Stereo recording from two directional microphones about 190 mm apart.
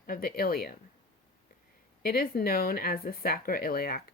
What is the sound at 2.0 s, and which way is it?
Speech, 50° left (ahead or behind).